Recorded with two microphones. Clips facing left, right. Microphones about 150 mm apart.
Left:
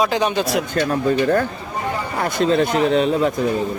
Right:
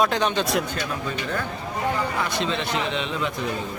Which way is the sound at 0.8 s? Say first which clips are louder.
Left 10 dB; 45° left (ahead or behind).